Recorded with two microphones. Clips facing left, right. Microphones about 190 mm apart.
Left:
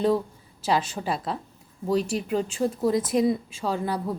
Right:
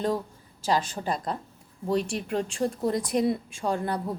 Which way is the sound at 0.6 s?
5° left (ahead or behind).